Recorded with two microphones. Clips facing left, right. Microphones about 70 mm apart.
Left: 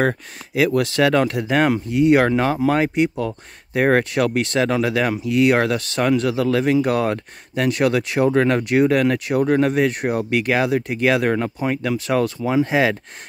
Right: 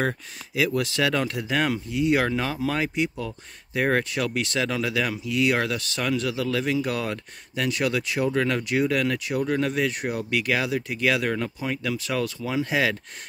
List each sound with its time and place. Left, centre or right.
0.6 s speech: left